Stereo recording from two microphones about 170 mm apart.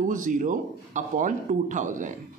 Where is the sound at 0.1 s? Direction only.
50° right (ahead or behind).